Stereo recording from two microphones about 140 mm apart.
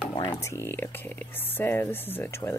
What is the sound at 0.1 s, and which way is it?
Speech, 25° left (ahead or behind).